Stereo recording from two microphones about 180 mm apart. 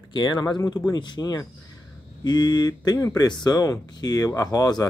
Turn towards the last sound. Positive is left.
turn(degrees=20)  # may be behind; listen again after turning